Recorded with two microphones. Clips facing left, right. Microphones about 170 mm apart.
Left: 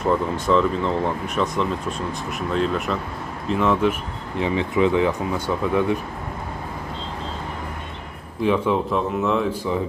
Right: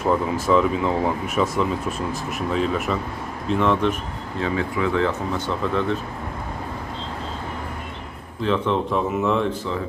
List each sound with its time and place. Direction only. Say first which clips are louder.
0.0 s speech: even; 5° right (ahead or behind)
4.4 s speech: left 4 dB; 20° left (ahead or behind)
8.4 s speech: left 2 dB; 10° left (ahead or behind)
8.9 s speech: even; centre (ahead or behind)